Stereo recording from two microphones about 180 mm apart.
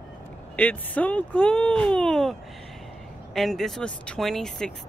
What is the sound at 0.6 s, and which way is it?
Speech, 10° left (ahead or behind).